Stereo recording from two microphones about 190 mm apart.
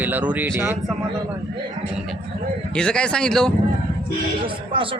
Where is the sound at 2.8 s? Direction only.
5° left (ahead or behind).